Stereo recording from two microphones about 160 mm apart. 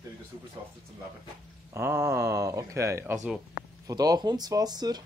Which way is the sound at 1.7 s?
15° right (ahead or behind).